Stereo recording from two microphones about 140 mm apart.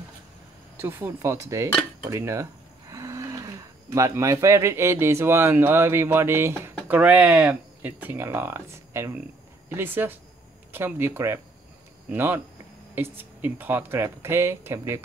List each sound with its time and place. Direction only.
0.7 s speech: 15° right (ahead or behind)